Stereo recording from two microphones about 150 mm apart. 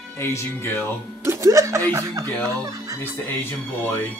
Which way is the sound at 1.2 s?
20° right (ahead or behind).